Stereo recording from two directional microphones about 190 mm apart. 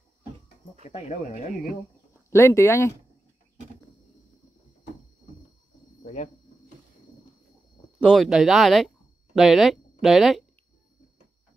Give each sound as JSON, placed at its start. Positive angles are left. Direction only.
{"t": 0.8, "sound": "speech", "side_deg": 35}
{"t": 2.3, "sound": "speech", "side_deg": 15}
{"t": 6.0, "sound": "a sound", "side_deg": 35}
{"t": 8.0, "sound": "speech", "side_deg": 0}